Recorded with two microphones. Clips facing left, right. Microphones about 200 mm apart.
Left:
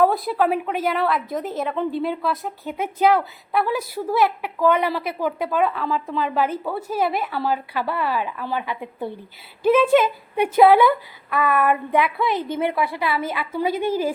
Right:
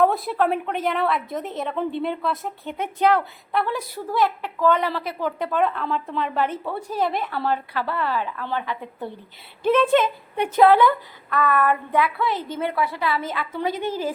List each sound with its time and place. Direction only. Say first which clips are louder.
0.0 s a woman's voice: left 1 dB; centre (ahead or behind)